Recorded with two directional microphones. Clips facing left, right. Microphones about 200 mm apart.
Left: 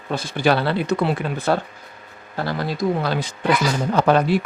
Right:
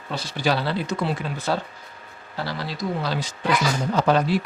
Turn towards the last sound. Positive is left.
turn(degrees=55)  # may be behind; listen again after turning